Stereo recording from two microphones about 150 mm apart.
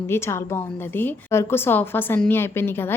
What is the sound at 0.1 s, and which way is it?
A woman's voice, 15° left (ahead or behind).